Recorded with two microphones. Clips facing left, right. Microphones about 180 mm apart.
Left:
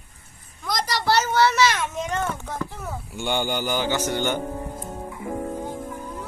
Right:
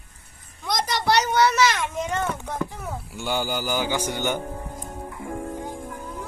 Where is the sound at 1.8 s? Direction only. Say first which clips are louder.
Even; 10° right (ahead or behind).